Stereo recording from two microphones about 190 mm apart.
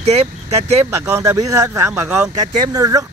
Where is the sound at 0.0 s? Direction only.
35° right (ahead or behind).